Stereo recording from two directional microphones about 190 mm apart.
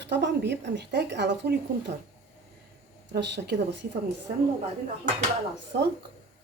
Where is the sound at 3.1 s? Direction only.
65° right (ahead or behind).